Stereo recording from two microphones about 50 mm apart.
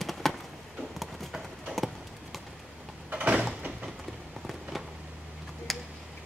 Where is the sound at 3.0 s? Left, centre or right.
Right.